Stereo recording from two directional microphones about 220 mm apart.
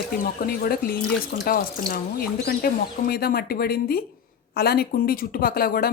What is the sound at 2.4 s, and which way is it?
Speech, 45° left (ahead or behind).